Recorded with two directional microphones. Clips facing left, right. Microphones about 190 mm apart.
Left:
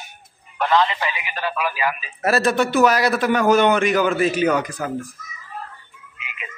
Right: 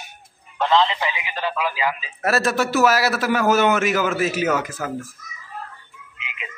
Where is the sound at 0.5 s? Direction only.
20° right (ahead or behind).